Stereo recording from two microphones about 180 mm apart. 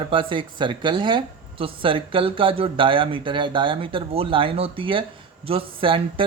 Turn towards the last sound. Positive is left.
turn(degrees=-30)  # may be behind; listen again after turning